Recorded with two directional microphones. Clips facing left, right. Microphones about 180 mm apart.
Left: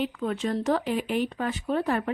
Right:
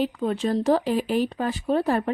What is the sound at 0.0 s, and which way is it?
Speech, 35° right (ahead or behind).